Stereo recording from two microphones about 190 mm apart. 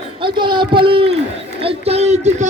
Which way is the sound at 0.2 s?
25° right (ahead or behind).